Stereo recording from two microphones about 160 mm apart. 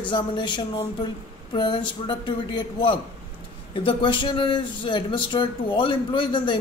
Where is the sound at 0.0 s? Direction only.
30° left (ahead or behind).